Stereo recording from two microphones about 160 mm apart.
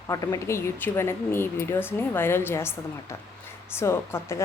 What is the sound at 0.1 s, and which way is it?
Speech, 20° left (ahead or behind).